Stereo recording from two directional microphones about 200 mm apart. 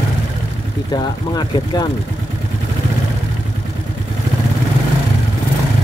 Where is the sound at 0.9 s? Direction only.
20° left (ahead or behind).